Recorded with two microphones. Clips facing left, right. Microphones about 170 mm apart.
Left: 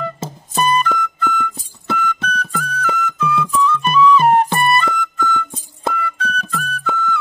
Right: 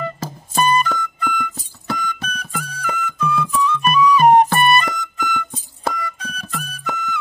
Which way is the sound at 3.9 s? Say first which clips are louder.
Right 1 dB; 15° right (ahead or behind).